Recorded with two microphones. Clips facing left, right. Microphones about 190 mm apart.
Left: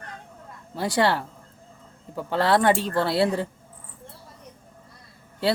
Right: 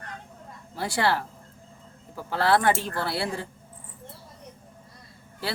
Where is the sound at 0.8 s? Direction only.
20° left (ahead or behind).